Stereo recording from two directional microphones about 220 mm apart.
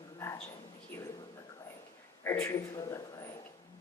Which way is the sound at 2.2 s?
10° left (ahead or behind).